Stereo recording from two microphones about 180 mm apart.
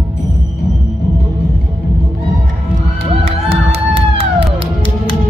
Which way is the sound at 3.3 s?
35° right (ahead or behind).